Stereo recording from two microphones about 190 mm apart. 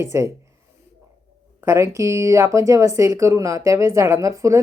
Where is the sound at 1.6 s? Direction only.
15° right (ahead or behind).